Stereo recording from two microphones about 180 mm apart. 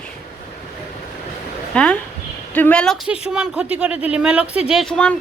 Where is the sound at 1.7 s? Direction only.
5° left (ahead or behind).